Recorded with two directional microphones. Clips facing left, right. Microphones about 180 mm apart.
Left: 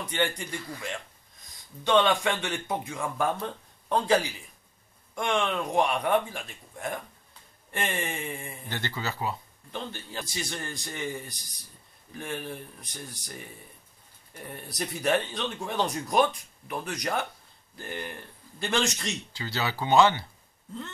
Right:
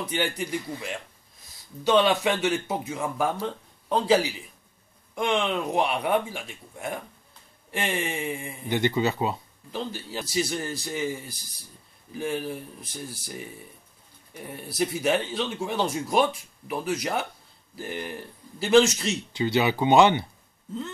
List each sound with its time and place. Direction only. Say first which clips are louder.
0.1 s speech: even; 10° right (ahead or behind)
1.9 s speech: right 2 dB; 10° right (ahead or behind)
5.3 s speech: right 1 dB; 15° right (ahead or behind)
8.2 s speech: right 5 dB; 15° right (ahead or behind)
9.7 s speech: right 4 dB; 10° right (ahead or behind)
14.3 s speech: right 3 dB; 5° right (ahead or behind)
19.3 s speech: right 11 dB; 20° right (ahead or behind)